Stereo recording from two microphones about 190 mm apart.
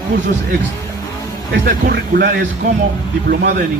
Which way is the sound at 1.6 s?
50° right (ahead or behind).